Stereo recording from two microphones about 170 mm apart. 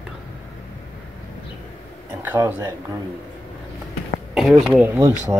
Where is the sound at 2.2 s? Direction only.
10° right (ahead or behind).